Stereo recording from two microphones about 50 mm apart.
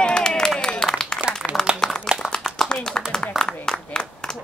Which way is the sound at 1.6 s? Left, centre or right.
Centre.